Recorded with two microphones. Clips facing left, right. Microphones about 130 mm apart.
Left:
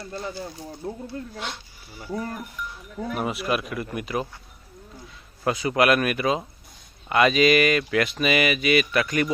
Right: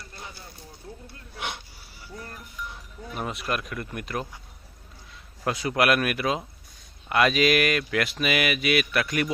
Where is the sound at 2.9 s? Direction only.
60° left (ahead or behind).